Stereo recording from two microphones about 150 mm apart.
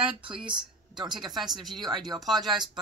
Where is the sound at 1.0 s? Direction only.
30° right (ahead or behind).